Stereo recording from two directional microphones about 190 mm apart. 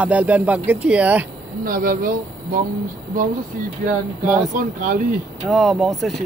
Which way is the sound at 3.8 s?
50° right (ahead or behind).